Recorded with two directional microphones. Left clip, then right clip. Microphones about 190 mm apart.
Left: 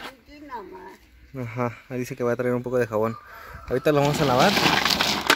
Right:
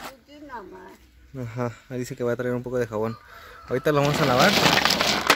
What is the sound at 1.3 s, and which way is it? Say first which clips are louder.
Speech: left 2 dB; centre (ahead or behind).